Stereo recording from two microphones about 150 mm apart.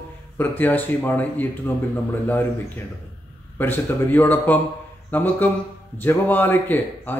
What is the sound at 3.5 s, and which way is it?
Speech, 15° left (ahead or behind).